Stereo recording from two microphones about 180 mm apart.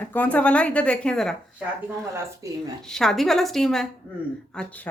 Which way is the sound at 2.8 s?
Centre (ahead or behind).